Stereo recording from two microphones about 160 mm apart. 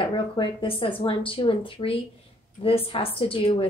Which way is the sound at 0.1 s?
30° left (ahead or behind).